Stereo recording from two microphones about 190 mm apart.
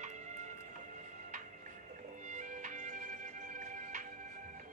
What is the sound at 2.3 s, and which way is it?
Music, 40° right (ahead or behind).